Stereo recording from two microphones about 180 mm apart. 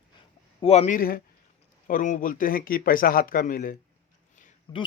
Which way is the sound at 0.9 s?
55° left (ahead or behind).